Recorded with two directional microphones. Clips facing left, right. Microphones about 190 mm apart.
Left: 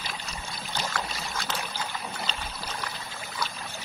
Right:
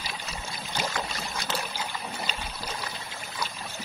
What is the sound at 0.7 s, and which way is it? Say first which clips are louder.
Boat: right 1 dB; 15° right (ahead or behind).